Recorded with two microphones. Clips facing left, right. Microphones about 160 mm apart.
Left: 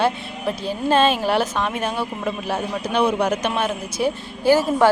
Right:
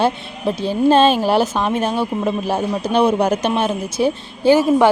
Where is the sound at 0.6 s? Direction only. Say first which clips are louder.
Right 5 dB; 30° right (ahead or behind).